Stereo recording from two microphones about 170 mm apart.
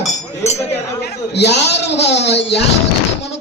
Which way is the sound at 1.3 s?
90° left.